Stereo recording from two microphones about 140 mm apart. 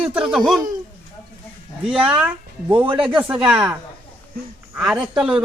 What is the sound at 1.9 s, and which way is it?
A man's voice, 5° right (ahead or behind).